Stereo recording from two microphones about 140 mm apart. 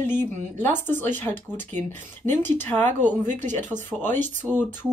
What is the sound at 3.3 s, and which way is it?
Speech, 60° right (ahead or behind).